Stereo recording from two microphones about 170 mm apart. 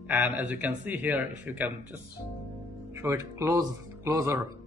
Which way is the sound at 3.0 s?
15° right (ahead or behind).